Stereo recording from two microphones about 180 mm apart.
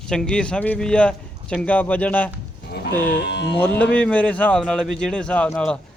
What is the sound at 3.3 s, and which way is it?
Music, 70° left (ahead or behind).